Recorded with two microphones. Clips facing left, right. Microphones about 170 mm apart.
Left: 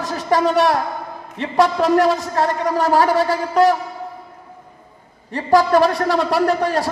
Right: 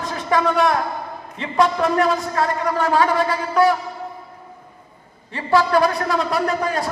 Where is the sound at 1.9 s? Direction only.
40° left (ahead or behind).